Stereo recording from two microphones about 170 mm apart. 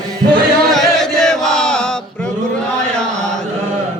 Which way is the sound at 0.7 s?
Centre (ahead or behind).